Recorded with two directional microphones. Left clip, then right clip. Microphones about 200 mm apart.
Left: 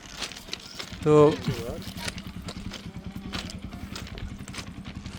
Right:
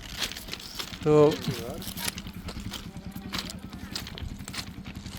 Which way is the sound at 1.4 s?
40° right (ahead or behind).